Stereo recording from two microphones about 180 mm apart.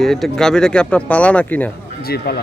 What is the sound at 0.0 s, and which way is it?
Speech, centre (ahead or behind).